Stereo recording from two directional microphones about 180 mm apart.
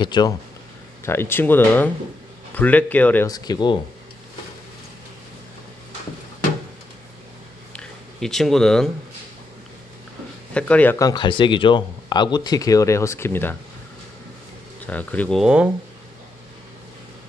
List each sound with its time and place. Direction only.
0.0 s speech: 25° left (ahead or behind)
1.0 s speech: 15° left (ahead or behind)
3.3 s speech: 20° left (ahead or behind)
7.7 s a sound: 5° left (ahead or behind)
10.5 s speech: 10° left (ahead or behind)
14.9 s speech: 10° left (ahead or behind)